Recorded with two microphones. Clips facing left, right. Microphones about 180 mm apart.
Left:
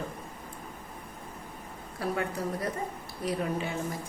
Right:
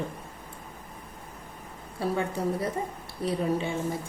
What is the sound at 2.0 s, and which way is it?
A woman's voice, 25° right (ahead or behind).